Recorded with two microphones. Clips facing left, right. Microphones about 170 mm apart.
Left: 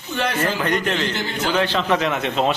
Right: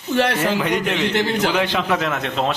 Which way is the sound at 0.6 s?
10° right (ahead or behind).